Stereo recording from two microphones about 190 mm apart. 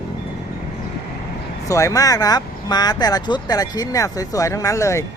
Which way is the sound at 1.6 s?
15° left (ahead or behind).